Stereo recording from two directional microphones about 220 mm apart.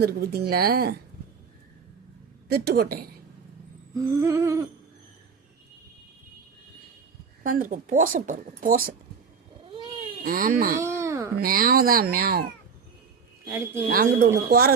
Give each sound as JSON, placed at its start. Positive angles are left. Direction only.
{"t": 0.0, "sound": "a woman's voice", "side_deg": -45}
{"t": 2.5, "sound": "a woman's voice", "side_deg": -45}
{"t": 3.9, "sound": "humming", "side_deg": -15}
{"t": 7.4, "sound": "a woman's voice", "side_deg": -40}
{"t": 9.6, "sound": "cat", "side_deg": -20}
{"t": 10.2, "sound": "a woman's voice", "side_deg": -40}
{"t": 10.8, "sound": "a sound", "side_deg": -15}
{"t": 11.3, "sound": "a woman's voice", "side_deg": -40}
{"t": 13.4, "sound": "speech", "side_deg": -10}
{"t": 13.9, "sound": "a woman's voice", "side_deg": -40}